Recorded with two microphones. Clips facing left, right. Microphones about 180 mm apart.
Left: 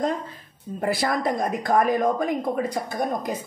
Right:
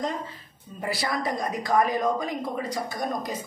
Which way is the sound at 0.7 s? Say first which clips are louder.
Left 5 dB; 50° left (ahead or behind).